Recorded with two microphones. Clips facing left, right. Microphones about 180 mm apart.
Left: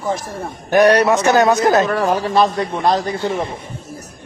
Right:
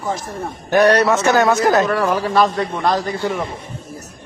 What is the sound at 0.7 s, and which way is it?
A man's voice, 15° left (ahead or behind).